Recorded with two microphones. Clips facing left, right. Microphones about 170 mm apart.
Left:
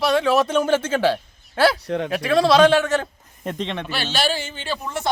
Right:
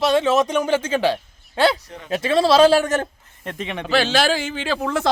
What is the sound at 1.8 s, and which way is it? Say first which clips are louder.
Speech: left 15 dB; 75° left (ahead or behind).